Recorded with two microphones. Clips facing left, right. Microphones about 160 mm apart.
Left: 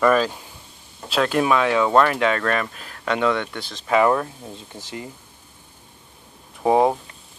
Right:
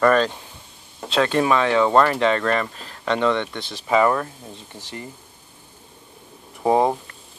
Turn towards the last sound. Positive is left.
turn(degrees=10)  # may be behind; listen again after turning